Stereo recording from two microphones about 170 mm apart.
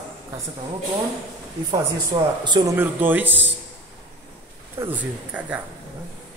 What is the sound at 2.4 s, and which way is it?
Speech, 25° right (ahead or behind).